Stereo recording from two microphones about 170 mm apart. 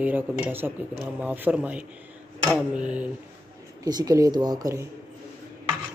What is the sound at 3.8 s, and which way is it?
Speech, 20° right (ahead or behind).